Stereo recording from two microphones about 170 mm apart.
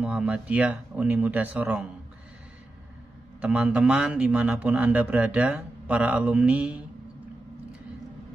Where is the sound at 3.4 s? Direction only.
10° right (ahead or behind).